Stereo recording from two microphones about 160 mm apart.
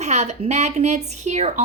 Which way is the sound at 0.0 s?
45° right (ahead or behind).